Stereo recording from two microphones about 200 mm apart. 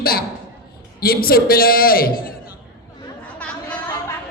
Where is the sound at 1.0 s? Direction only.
50° left (ahead or behind).